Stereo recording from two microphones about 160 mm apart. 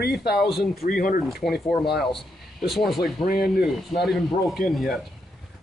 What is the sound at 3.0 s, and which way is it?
Speech, 70° left (ahead or behind).